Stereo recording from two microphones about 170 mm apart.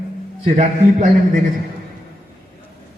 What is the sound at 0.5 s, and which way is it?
Speech, 45° right (ahead or behind).